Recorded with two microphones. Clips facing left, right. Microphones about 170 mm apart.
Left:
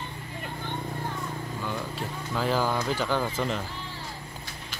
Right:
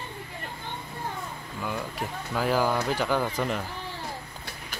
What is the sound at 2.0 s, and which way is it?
Speech, 10° right (ahead or behind).